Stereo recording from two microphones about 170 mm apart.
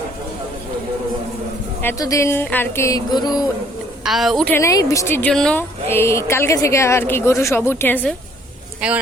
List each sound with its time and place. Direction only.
1.8 s speech: 15° left (ahead or behind)
4.0 s a woman's voice: centre (ahead or behind)
4.5 s speech: 20° left (ahead or behind)